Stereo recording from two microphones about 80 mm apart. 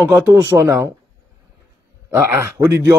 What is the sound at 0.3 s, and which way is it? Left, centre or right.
Speech, right.